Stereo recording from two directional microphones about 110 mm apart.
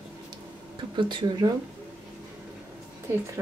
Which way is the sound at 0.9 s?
45° right (ahead or behind).